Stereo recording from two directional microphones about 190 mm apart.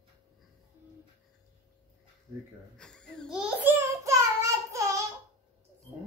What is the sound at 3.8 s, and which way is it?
Child singing, 15° right (ahead or behind).